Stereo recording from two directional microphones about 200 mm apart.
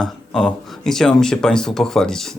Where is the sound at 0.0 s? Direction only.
Centre (ahead or behind).